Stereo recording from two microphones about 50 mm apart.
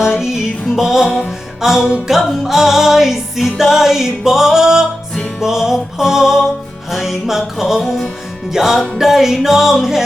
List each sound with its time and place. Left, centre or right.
0.0 s music: centre